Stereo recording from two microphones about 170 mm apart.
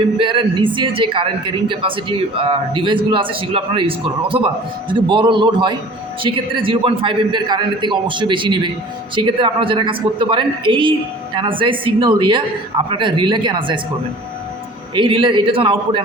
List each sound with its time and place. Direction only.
0.2 s a man's voice: 30° right (ahead or behind)
14.9 s a man's voice: 30° right (ahead or behind)